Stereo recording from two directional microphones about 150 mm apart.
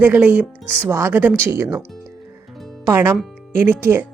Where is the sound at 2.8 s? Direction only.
15° right (ahead or behind).